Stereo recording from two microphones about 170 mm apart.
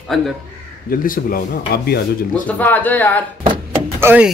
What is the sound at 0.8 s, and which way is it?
Speech, 55° left (ahead or behind).